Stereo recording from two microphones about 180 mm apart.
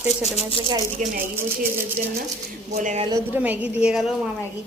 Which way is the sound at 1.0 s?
45° right (ahead or behind).